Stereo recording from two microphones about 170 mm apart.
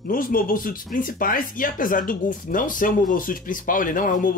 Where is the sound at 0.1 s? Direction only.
55° left (ahead or behind).